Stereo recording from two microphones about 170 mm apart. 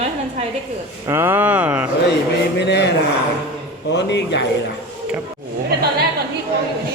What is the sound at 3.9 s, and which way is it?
Speech, 90° left.